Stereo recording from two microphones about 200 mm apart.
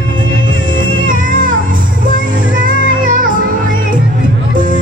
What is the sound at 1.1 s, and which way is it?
Music, 45° right (ahead or behind).